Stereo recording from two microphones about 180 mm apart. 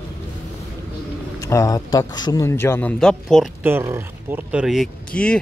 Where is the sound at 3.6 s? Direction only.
10° right (ahead or behind); by 5.4 s 5° left (ahead or behind).